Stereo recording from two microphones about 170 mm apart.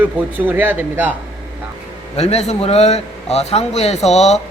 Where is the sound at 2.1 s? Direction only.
40° left (ahead or behind).